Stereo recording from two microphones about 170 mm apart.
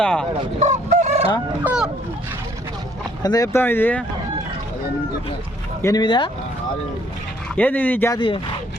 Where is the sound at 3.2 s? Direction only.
20° left (ahead or behind).